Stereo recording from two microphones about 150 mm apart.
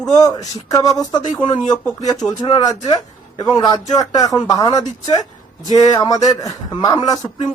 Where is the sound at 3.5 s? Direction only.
25° left (ahead or behind).